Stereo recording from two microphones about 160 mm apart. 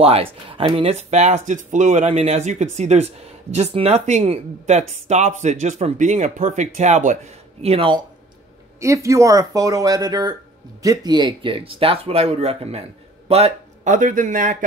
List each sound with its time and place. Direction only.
0.0 s speech: 35° right (ahead or behind)
8.7 s a man's voice: 20° right (ahead or behind); by 13.9 s 40° right (ahead or behind)
13.9 s a man's voice: 55° right (ahead or behind)